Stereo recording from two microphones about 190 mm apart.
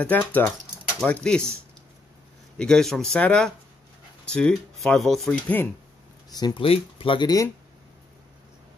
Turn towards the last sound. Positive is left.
turn(degrees=20)  # may be behind; listen again after turning